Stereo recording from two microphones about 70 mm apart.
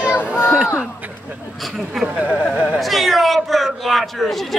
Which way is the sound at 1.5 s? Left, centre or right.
Centre.